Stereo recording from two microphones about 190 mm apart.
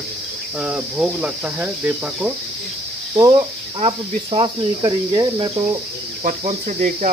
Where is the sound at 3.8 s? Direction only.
25° right (ahead or behind).